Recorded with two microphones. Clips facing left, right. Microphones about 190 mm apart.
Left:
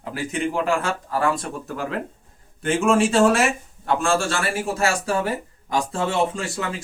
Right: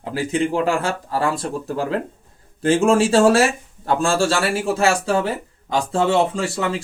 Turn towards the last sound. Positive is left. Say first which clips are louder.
# right 5 dB
turn(degrees=-30)  # may be behind; listen again after turning